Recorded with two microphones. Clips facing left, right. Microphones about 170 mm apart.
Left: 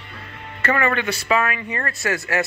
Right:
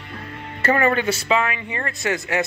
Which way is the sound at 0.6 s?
30° right (ahead or behind).